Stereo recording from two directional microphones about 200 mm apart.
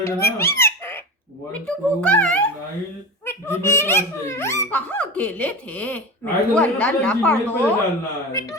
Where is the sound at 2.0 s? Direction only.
5° left (ahead or behind).